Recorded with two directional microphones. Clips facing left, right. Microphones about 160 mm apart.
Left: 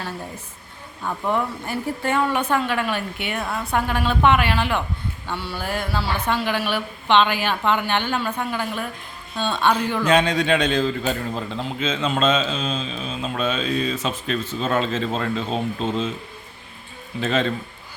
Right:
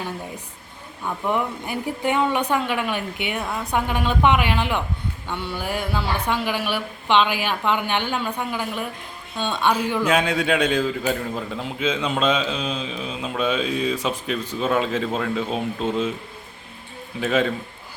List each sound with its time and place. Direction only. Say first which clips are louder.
1.3 s speech: even; 15° right (ahead or behind)
17.2 s speech: right 1 dB; 10° right (ahead or behind)